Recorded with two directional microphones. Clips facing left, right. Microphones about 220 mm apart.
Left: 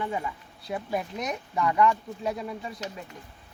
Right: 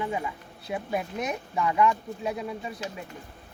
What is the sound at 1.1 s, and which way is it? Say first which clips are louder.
Speech: right 1 dB; 5° right (ahead or behind).